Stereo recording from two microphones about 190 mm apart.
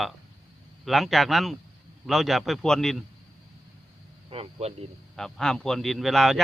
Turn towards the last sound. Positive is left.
turn(degrees=0)  # may be behind; listen again after turning